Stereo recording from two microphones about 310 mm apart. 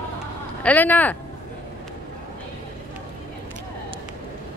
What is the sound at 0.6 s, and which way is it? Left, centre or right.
Speech, centre.